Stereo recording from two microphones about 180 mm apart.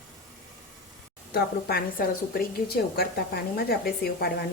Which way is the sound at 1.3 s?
55° left (ahead or behind).